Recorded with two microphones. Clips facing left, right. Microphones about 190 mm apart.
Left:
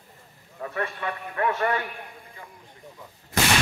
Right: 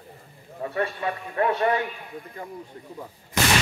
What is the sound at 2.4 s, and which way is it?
Speech, 45° right (ahead or behind).